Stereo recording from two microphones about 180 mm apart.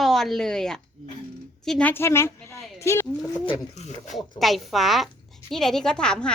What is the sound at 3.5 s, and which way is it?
Speech, 40° left (ahead or behind).